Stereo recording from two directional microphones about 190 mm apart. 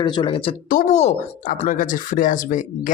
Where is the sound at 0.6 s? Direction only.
45° left (ahead or behind).